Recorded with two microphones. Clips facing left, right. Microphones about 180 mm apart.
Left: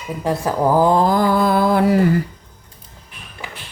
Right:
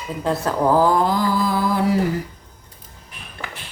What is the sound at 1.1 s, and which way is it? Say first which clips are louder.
Mantra: left 4 dB; 60° left (ahead or behind).